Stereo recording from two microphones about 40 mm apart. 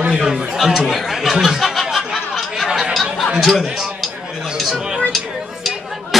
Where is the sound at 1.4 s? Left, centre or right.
Centre.